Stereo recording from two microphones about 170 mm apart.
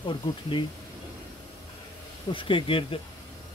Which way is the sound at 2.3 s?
30° left (ahead or behind).